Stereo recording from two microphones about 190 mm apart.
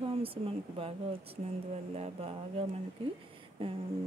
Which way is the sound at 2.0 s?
30° right (ahead or behind).